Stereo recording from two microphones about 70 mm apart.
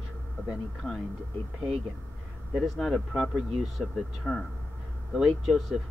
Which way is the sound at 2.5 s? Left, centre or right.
Centre.